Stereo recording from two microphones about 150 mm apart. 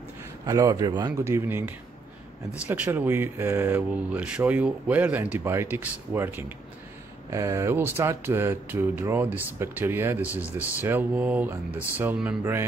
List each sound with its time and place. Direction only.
0.5 s a man's voice: 20° right (ahead or behind)
2.6 s speech: 10° right (ahead or behind)